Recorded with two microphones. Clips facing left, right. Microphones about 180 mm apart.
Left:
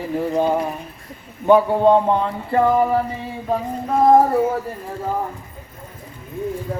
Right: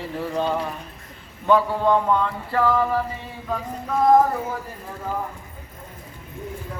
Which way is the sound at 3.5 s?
30° left (ahead or behind).